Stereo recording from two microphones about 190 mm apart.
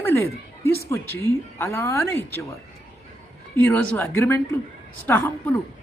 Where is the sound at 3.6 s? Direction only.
10° left (ahead or behind).